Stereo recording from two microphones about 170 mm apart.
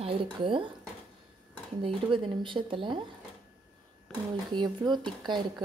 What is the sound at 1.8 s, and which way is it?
Speech, 30° right (ahead or behind).